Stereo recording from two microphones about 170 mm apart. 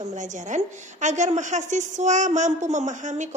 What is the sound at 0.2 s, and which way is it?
A woman's voice, 45° right (ahead or behind).